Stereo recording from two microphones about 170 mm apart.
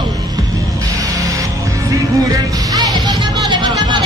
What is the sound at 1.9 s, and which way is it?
Music, 20° right (ahead or behind).